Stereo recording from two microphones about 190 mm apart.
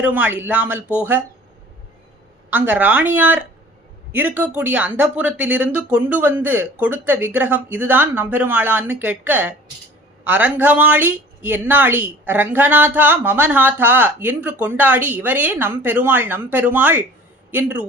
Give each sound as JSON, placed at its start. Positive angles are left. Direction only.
{"t": 0.0, "sound": "speech", "side_deg": -10}
{"t": 2.5, "sound": "speech", "side_deg": -10}